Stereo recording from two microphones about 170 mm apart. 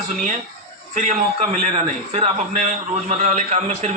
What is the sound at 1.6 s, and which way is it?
A man's voice, 40° right (ahead or behind).